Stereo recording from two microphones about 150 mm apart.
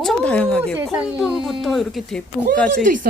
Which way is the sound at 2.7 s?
60° right (ahead or behind).